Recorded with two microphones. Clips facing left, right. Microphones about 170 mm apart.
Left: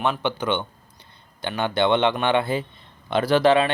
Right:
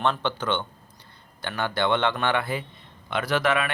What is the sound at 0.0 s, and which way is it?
Speech, 10° left (ahead or behind).